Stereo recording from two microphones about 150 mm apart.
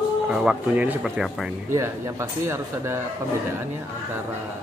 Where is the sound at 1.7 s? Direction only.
20° right (ahead or behind).